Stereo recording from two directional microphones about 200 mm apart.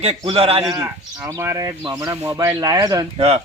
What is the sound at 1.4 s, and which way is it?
Speech, 15° right (ahead or behind).